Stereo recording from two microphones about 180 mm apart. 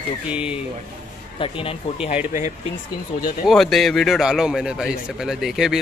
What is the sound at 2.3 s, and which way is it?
Speech, 45° left (ahead or behind).